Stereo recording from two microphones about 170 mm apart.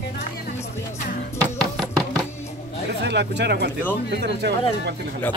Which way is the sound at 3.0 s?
85° right.